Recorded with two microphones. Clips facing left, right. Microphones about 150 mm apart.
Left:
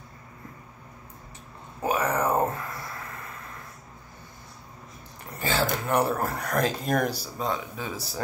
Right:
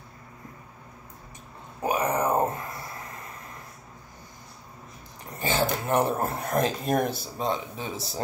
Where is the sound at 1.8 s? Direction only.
15° right (ahead or behind).